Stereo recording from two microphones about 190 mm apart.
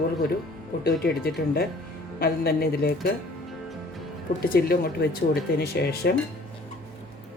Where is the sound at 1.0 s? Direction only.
55° left (ahead or behind).